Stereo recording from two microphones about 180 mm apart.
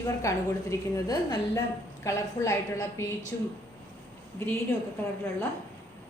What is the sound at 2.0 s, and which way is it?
A woman's voice, 15° left (ahead or behind).